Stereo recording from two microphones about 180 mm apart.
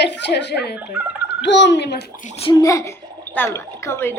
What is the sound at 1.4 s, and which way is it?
Speech, 80° left.